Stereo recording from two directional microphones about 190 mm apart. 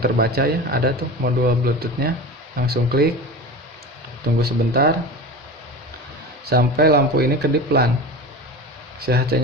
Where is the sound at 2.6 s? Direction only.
55° right (ahead or behind).